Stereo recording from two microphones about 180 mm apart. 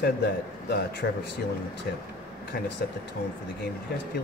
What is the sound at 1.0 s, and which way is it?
Speech, 70° left (ahead or behind).